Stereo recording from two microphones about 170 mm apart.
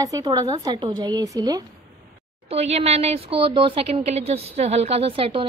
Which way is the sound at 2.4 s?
35° right (ahead or behind).